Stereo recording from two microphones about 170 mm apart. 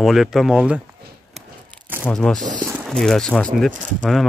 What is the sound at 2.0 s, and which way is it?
Speech, 5° left (ahead or behind).